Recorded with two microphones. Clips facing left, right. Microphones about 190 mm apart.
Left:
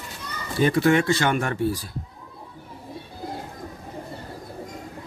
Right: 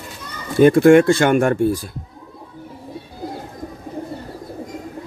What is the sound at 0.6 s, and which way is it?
Speech, 50° right (ahead or behind).